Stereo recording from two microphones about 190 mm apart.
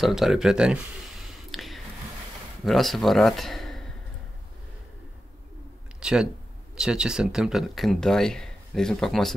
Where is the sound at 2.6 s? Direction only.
Centre (ahead or behind).